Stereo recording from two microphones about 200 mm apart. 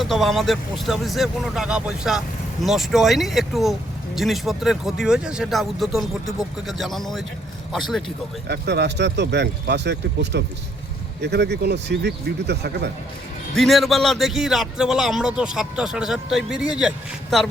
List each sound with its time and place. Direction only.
0.0 s speech: centre (ahead or behind)
8.4 s speech: 55° right (ahead or behind)
13.6 s speech: centre (ahead or behind)